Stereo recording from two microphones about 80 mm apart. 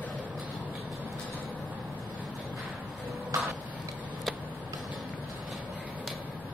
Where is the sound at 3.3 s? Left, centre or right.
Right.